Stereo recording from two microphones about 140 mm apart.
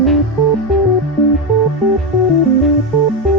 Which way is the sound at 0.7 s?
Centre (ahead or behind).